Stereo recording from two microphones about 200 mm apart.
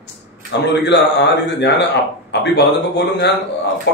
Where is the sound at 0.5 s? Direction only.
55° left (ahead or behind).